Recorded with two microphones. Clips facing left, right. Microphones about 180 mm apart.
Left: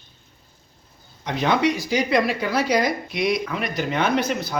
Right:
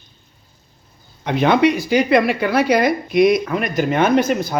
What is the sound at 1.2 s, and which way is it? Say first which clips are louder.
A woman's voice: right 6 dB; 60° right (ahead or behind).